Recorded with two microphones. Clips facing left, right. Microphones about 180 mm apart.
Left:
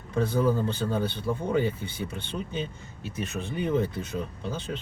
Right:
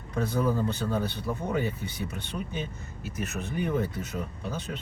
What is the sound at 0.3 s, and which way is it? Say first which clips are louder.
Speech: left 1 dB; 30° left (ahead or behind).